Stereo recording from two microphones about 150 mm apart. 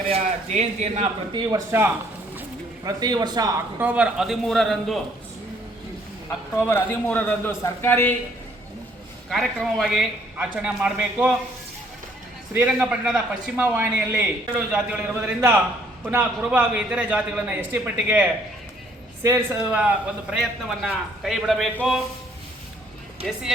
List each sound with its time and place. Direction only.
0.1 s speech: 50° right (ahead or behind)
1.3 s a man's voice: 25° right (ahead or behind)
3.8 s a man's voice: 10° right (ahead or behind)
6.6 s speech: 15° left (ahead or behind)
9.3 s a man's voice: centre (ahead or behind)
12.5 s a man's voice: 5° right (ahead or behind)
19.6 s a man's voice: 10° right (ahead or behind)
23.2 s a man's voice: 5° right (ahead or behind)